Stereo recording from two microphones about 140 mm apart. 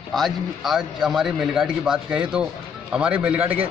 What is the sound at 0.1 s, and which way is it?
A man's voice, centre (ahead or behind).